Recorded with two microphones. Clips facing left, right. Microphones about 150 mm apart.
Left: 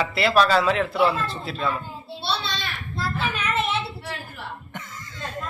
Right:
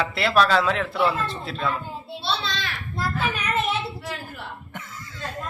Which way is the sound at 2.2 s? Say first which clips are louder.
Even; 90° right.